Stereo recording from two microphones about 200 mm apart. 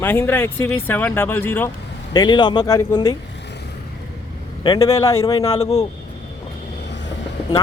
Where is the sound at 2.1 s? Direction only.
20° left (ahead or behind).